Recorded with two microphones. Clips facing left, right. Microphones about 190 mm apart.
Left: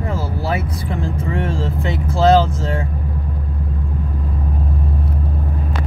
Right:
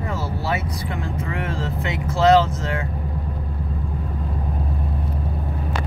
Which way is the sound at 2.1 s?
30° left (ahead or behind).